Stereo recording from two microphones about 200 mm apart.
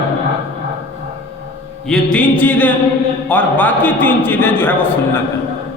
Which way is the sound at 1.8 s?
5° left (ahead or behind).